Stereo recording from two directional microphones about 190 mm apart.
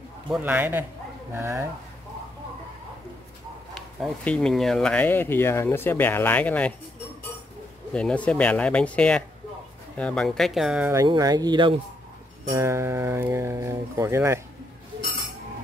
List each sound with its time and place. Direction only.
0.3 s speech: 10° right (ahead or behind)
4.0 s speech: 5° left (ahead or behind)
7.9 s speech: 5° left (ahead or behind)
10.9 s speech: 20° right (ahead or behind)